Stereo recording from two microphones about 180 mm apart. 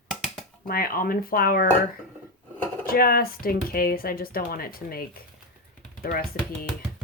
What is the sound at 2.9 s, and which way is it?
Speech, 55° left (ahead or behind).